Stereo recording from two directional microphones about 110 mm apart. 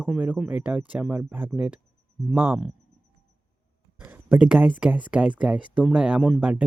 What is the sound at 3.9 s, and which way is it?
Speech, 10° right (ahead or behind).